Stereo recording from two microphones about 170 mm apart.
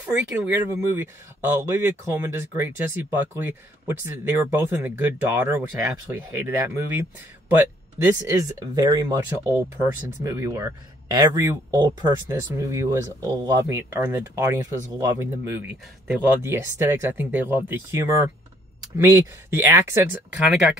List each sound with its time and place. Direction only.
0.0 s speech: 10° right (ahead or behind)